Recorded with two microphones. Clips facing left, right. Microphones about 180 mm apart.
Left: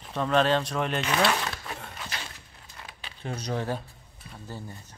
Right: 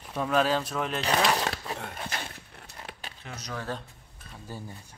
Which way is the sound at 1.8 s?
50° right (ahead or behind).